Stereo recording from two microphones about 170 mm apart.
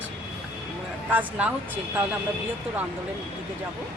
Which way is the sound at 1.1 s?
10° right (ahead or behind).